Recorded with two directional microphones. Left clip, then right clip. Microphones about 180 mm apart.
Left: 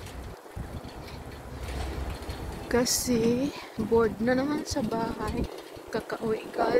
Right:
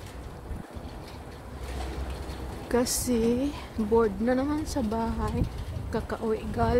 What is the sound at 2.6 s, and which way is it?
A woman's voice, 10° right (ahead or behind).